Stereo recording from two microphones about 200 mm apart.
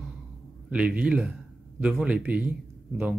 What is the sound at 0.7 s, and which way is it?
A man's voice, 5° right (ahead or behind).